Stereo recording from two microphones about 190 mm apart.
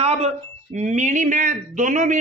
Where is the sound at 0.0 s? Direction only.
30° right (ahead or behind).